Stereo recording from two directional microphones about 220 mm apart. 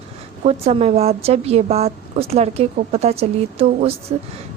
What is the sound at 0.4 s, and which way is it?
Speech, 30° right (ahead or behind).